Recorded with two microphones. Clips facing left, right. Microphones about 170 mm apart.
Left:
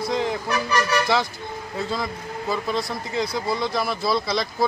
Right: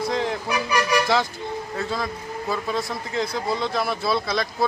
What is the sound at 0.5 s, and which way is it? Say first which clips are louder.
Vehicle: even; 10° right (ahead or behind).